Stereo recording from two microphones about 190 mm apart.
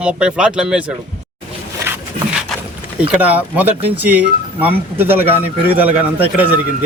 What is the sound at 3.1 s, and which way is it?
Speech, 5° right (ahead or behind).